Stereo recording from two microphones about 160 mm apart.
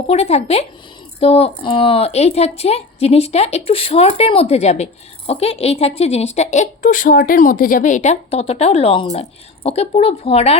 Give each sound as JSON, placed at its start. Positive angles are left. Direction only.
{"t": 0.1, "sound": "speech", "side_deg": 40}